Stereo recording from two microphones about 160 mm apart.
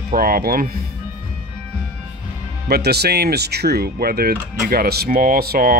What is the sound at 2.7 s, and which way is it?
Speech, 90° right.